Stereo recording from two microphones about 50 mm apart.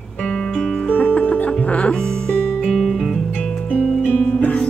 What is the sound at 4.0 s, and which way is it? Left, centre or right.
Music, left.